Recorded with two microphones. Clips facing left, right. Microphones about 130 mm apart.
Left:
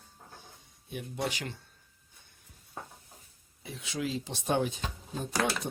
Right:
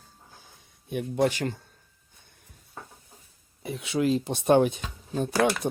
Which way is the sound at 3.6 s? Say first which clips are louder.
Right 10 dB; 60° right (ahead or behind).